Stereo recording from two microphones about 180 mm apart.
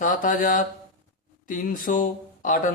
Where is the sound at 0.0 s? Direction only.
45° left (ahead or behind).